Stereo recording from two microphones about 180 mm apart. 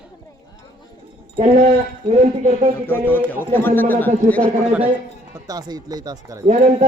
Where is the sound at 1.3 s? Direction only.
35° right (ahead or behind).